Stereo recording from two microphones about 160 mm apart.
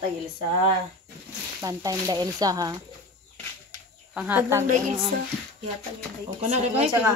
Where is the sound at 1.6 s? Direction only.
20° right (ahead or behind).